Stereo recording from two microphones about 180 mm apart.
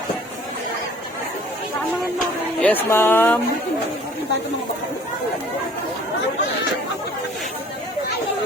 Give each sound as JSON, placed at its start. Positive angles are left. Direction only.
{"t": 2.6, "sound": "speech", "side_deg": 10}